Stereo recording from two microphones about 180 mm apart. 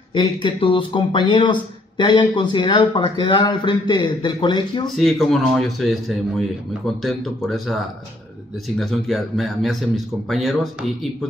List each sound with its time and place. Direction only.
0.1 s speech: 25° left (ahead or behind)
4.8 s a man's voice: centre (ahead or behind)